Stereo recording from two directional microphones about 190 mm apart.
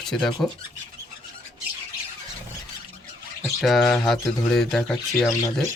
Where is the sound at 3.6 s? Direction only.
Centre (ahead or behind).